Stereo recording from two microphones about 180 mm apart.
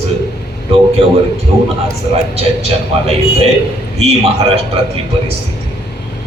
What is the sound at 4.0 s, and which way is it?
Speech, 35° right (ahead or behind).